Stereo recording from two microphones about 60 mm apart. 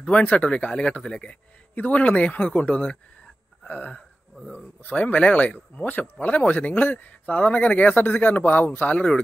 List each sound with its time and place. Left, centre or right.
0.0 s speech: left
3.6 s a sound: left
4.5 s speech: left